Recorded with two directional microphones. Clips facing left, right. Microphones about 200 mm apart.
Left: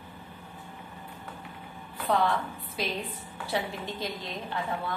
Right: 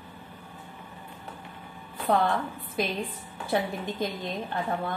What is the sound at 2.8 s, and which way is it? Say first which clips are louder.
A woman's voice: right 4 dB; 50° right (ahead or behind).